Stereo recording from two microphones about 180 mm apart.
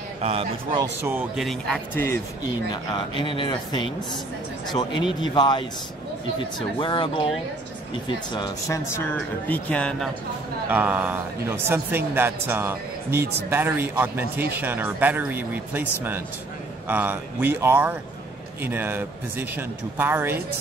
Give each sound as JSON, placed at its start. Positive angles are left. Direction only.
{"t": 0.2, "sound": "a man's voice", "side_deg": -35}
{"t": 1.3, "sound": "speech", "side_deg": 0}
{"t": 2.0, "sound": "speech", "side_deg": 15}
{"t": 2.7, "sound": "speech", "side_deg": 25}
{"t": 6.8, "sound": "speech", "side_deg": 25}
{"t": 8.4, "sound": "speech", "side_deg": 15}
{"t": 10.7, "sound": "speech", "side_deg": -10}